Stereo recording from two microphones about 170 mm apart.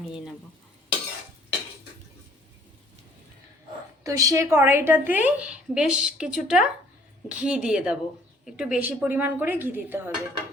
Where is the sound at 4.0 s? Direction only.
20° right (ahead or behind).